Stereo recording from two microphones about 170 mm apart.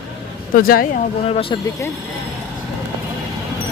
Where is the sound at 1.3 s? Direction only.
30° left (ahead or behind).